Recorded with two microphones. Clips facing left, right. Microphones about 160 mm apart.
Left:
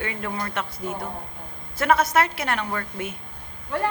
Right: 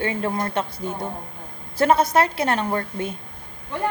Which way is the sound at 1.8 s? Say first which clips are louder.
Right 3 dB; 30° right (ahead or behind).